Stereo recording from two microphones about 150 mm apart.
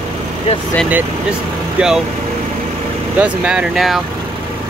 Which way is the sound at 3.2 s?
5° right (ahead or behind).